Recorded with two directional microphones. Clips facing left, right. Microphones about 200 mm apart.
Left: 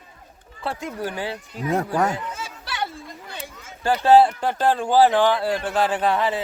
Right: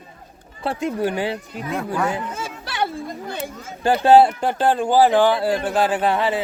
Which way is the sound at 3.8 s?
20° right (ahead or behind).